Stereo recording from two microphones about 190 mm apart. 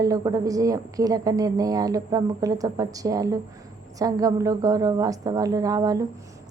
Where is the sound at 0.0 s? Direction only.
20° right (ahead or behind).